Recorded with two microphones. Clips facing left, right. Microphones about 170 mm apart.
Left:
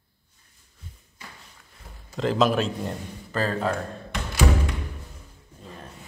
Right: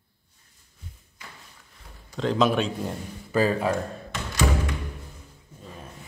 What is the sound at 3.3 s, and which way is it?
Speech, 10° right (ahead or behind).